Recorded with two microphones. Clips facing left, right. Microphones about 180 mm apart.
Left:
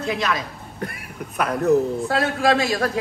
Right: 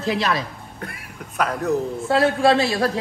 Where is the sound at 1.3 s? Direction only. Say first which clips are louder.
Left 3 dB; centre (ahead or behind).